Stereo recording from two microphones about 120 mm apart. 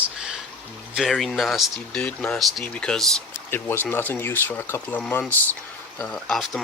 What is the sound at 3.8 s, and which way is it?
Speech, 15° left (ahead or behind).